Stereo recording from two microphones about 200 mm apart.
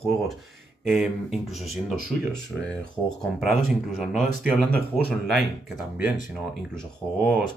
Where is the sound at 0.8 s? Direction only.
Centre (ahead or behind).